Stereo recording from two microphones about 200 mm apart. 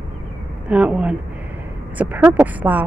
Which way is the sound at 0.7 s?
5° right (ahead or behind).